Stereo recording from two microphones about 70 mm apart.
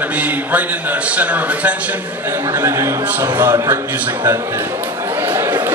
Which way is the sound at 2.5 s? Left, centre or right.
Right.